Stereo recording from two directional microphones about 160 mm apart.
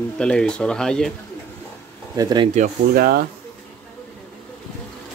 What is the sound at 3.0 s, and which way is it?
Speech, 65° right (ahead or behind).